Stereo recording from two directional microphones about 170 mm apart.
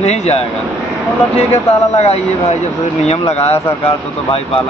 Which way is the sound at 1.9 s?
40° left (ahead or behind).